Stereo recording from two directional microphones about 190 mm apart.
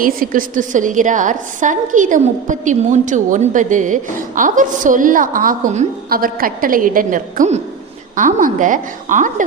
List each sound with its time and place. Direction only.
0.0 s a woman's voice: 45° right (ahead or behind)